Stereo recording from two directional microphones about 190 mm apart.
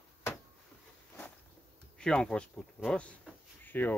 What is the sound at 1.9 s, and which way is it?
Speech, 5° left (ahead or behind).